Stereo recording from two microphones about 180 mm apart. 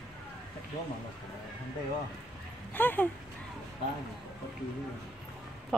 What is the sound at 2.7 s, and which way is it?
Speech, 10° left (ahead or behind).